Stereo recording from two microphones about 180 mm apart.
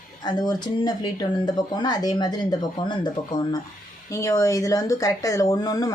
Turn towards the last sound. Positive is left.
turn(degrees=20)  # may be behind; listen again after turning